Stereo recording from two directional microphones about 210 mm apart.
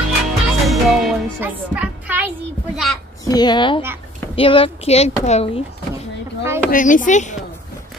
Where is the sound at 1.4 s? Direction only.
10° right (ahead or behind).